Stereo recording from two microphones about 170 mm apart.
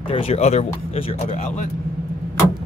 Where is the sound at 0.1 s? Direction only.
35° left (ahead or behind).